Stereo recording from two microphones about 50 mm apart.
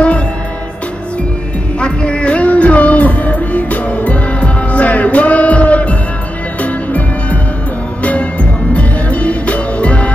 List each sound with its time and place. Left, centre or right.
1.8 s music: left